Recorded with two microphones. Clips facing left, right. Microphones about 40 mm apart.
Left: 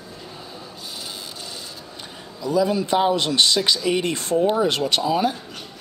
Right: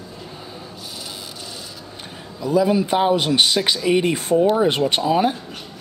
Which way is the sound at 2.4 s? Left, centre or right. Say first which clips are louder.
Right 3 dB; right.